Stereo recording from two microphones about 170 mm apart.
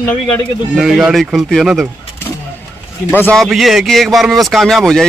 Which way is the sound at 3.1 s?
5° left (ahead or behind).